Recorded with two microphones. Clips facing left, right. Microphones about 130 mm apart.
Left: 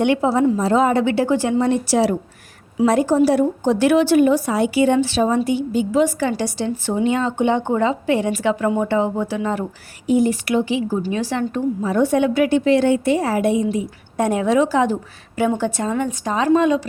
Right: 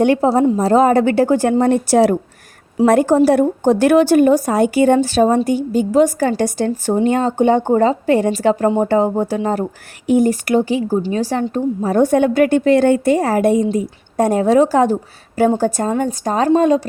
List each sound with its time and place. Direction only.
0.0 s a woman's voice: 40° right (ahead or behind)